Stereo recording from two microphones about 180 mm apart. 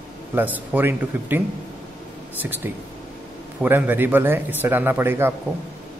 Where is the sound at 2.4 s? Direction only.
10° right (ahead or behind).